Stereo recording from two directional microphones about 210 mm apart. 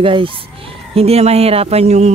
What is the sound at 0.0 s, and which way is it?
Speech, 25° right (ahead or behind).